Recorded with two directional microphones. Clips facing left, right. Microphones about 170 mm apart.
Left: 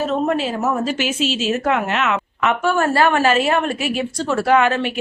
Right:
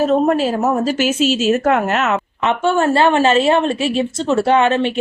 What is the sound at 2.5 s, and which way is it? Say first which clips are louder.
A woman's voice: right 3 dB; 25° right (ahead or behind).